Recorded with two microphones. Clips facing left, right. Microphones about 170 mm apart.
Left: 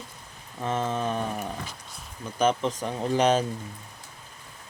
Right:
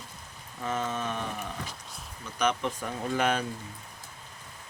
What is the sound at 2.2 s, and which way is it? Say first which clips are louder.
Rain: left 4 dB; 30° left (ahead or behind).